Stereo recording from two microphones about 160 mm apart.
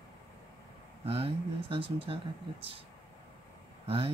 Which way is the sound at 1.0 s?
35° right (ahead or behind).